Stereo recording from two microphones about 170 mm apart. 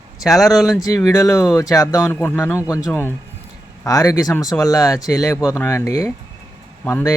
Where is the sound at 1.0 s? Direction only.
20° left (ahead or behind).